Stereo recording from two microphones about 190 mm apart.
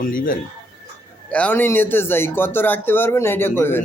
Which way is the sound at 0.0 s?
45° left (ahead or behind).